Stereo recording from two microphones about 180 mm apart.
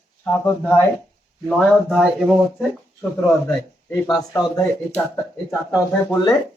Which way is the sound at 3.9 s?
20° left (ahead or behind).